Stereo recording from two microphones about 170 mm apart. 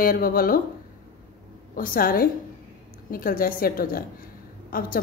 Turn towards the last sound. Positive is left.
turn(degrees=60)  # may be behind; listen again after turning